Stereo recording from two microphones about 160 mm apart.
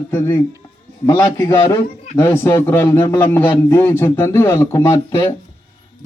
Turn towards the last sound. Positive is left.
turn(degrees=20)  # may be behind; listen again after turning